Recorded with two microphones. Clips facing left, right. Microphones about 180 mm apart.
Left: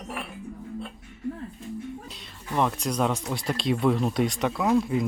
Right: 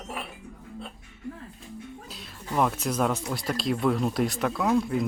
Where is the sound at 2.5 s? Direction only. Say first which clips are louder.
Even; 5° right (ahead or behind).